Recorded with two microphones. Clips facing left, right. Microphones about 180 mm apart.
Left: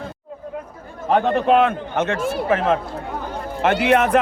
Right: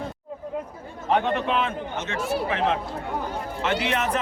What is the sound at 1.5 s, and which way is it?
A man's voice, 55° left (ahead or behind).